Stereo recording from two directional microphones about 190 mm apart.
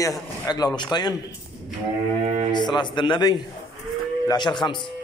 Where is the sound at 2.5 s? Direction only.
25° left (ahead or behind).